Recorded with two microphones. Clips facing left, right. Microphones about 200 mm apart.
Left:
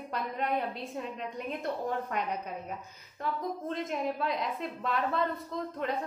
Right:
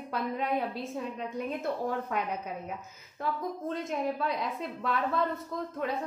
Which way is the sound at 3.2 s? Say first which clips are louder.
Right 1 dB; 5° right (ahead or behind).